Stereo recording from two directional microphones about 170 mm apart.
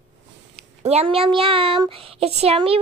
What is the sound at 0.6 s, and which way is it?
Speech, 40° right (ahead or behind).